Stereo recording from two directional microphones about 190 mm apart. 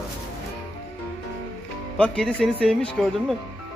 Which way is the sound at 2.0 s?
5° left (ahead or behind).